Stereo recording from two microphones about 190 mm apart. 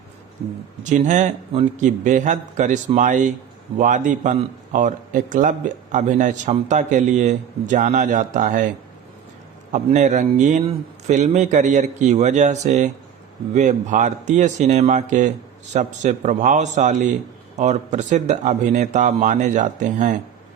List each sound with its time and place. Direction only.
0.9 s a man's voice: 40° right (ahead or behind)
9.7 s a man's voice: 40° right (ahead or behind)